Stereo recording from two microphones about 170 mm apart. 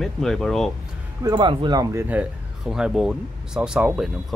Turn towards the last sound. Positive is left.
turn(degrees=-5)  # may be behind; listen again after turning